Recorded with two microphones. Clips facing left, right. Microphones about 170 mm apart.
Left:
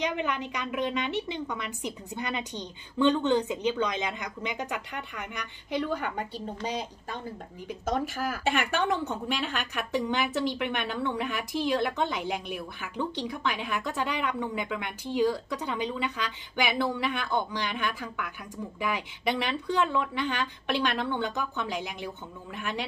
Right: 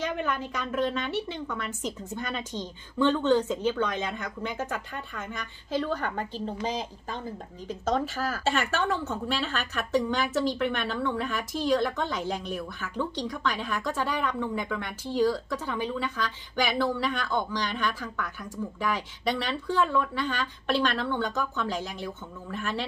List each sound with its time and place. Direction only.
0.0 s a woman's voice: 15° left (ahead or behind)
7.6 s a woman's voice: 10° left (ahead or behind)